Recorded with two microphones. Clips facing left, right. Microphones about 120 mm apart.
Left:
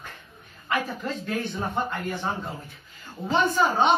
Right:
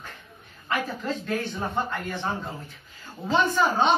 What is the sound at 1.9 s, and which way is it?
A woman's voice, 15° left (ahead or behind).